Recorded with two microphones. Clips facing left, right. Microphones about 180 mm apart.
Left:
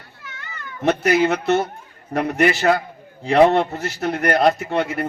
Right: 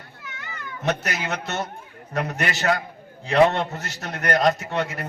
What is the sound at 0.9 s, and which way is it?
A man's voice, 30° left (ahead or behind).